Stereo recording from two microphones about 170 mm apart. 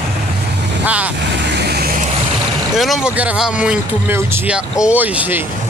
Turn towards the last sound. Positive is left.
turn(degrees=-10)  # may be behind; listen again after turning